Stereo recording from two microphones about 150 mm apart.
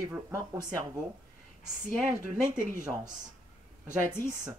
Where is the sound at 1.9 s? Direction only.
55° right (ahead or behind).